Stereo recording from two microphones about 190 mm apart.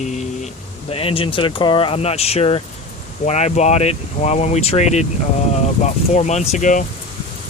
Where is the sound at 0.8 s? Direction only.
30° left (ahead or behind).